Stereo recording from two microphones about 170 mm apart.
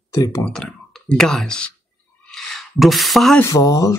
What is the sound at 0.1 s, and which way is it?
Speech, 20° left (ahead or behind).